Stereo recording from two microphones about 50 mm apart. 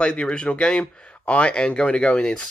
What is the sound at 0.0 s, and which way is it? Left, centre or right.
Speech, left.